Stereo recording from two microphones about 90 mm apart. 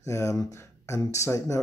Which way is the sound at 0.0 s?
35° left (ahead or behind).